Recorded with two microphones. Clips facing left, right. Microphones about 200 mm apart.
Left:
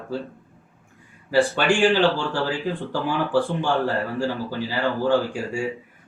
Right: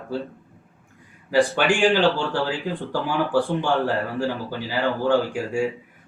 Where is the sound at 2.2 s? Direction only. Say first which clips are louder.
Even; 15° right (ahead or behind).